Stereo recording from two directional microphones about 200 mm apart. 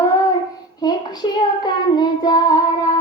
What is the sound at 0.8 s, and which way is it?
Child singing, 20° left (ahead or behind).